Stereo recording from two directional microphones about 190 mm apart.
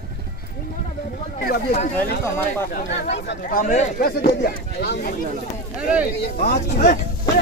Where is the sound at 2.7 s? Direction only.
65° left (ahead or behind).